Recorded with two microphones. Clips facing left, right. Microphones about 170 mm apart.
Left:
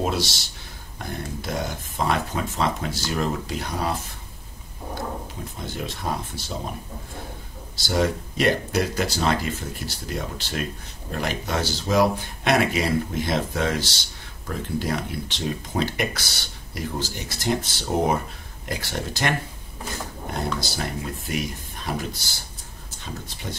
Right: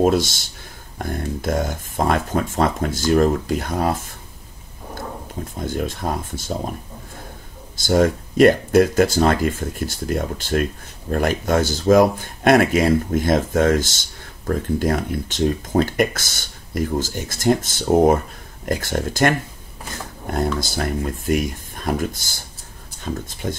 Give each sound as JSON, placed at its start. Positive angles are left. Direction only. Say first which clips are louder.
{"t": 0.0, "sound": "speech", "louder": "right 8 dB", "side_deg": -50}
{"t": 5.6, "sound": "speech", "louder": "right 7 dB", "side_deg": -50}
{"t": 7.7, "sound": "speech", "louder": "right 6 dB", "side_deg": -50}